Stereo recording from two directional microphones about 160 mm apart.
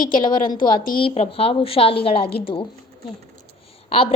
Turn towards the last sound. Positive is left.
turn(degrees=35)  # may be behind; listen again after turning